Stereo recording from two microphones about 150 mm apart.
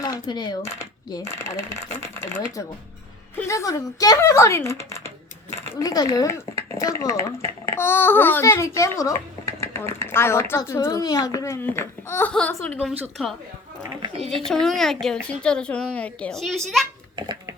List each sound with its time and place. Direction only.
0.0 s coin: 25° left (ahead or behind)
0.6 s cutlery: 20° left (ahead or behind)
1.2 s speech: 50° right (ahead or behind)
3.3 s a child's voice: 20° left (ahead or behind)
13.2 s a child's voice: centre (ahead or behind)